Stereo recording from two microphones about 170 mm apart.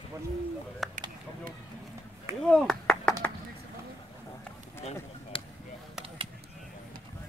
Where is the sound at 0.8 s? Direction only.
Centre (ahead or behind).